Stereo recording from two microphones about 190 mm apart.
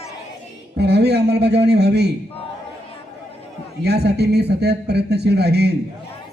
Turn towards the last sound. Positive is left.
turn(degrees=-60)  # may be behind; listen again after turning